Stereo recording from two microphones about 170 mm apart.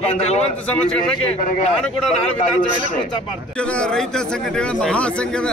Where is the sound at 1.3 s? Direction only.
50° left (ahead or behind).